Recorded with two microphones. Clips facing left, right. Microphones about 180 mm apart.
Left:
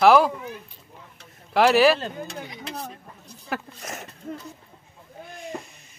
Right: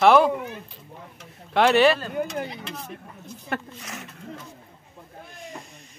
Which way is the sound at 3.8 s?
45° left (ahead or behind).